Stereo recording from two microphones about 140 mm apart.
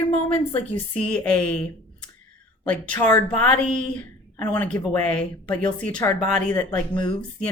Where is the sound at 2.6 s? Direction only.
10° left (ahead or behind).